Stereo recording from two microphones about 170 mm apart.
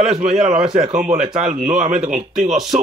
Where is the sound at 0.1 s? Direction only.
45° right (ahead or behind).